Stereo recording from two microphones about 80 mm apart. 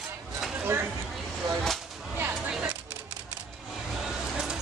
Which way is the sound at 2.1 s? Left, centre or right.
Right.